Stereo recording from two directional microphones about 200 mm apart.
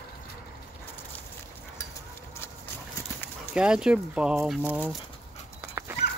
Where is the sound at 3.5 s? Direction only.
5° right (ahead or behind).